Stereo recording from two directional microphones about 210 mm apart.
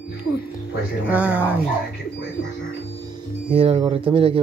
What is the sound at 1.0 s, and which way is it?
Speech, 5° right (ahead or behind).